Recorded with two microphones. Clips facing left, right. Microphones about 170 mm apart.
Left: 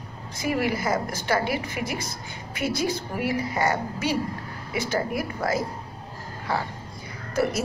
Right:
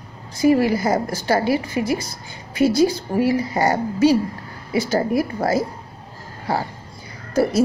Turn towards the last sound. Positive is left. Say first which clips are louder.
# right 7 dB
turn(degrees=-30)  # may be behind; listen again after turning